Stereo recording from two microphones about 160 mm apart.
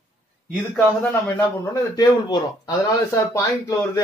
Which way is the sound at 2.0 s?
25° left (ahead or behind).